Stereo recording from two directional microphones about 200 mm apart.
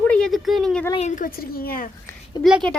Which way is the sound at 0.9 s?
35° left (ahead or behind).